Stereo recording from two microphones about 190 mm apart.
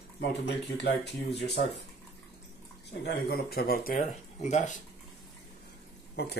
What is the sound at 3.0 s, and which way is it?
Speech, 55° left (ahead or behind).